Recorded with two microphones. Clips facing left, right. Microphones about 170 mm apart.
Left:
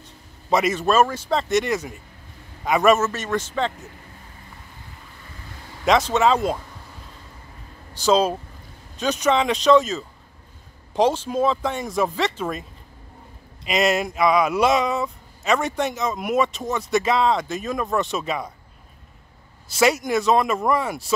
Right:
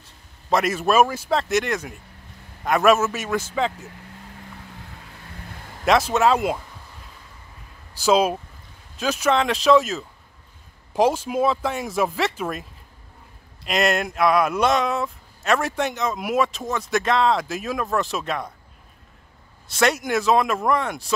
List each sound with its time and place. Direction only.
0.0 s speech: centre (ahead or behind)
5.9 s speech: 5° right (ahead or behind)
7.9 s speech: 10° right (ahead or behind)
13.7 s speech: centre (ahead or behind)
19.7 s speech: centre (ahead or behind)